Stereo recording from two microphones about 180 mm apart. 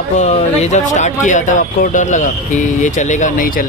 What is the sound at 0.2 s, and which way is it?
Speech, 40° left (ahead or behind).